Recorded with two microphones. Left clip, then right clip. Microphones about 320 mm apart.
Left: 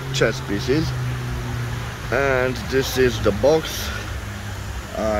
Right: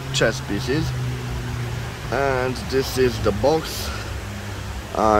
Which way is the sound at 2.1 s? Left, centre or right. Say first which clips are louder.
Left 2 dB; centre.